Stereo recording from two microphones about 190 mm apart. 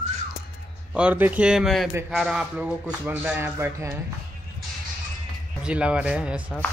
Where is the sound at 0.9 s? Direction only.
10° right (ahead or behind).